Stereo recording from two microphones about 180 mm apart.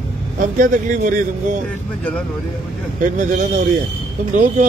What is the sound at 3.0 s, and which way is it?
A man's voice, 45° right (ahead or behind).